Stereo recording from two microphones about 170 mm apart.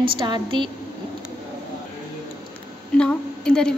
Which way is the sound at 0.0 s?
30° right (ahead or behind).